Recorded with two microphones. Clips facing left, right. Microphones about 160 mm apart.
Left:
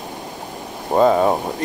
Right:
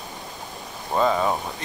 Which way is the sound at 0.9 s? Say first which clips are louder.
Left 7 dB; 30° left (ahead or behind).